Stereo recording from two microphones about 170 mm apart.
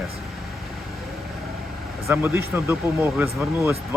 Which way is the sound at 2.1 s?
10° right (ahead or behind).